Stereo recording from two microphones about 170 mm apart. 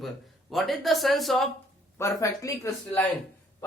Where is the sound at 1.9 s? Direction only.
15° left (ahead or behind).